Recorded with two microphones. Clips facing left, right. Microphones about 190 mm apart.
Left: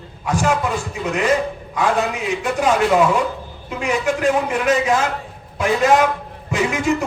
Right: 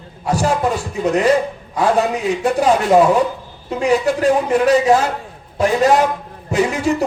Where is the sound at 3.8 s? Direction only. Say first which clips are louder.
Right 4 dB; 35° right (ahead or behind).